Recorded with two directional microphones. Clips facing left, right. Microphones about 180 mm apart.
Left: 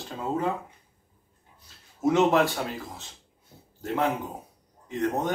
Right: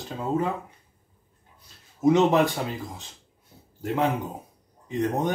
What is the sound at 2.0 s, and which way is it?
Speech, 20° right (ahead or behind).